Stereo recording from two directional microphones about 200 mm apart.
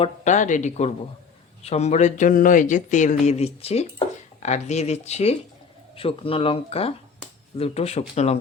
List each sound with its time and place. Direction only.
0.0 s speech: 35° left (ahead or behind)